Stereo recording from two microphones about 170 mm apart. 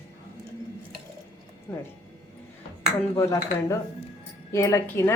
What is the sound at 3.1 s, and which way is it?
Speech, 20° left (ahead or behind).